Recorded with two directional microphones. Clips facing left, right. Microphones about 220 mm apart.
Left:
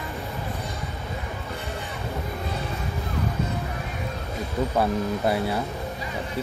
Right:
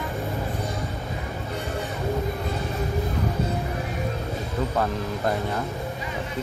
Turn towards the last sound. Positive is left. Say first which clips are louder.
# left 2 dB
turn(degrees=10)  # may be behind; listen again after turning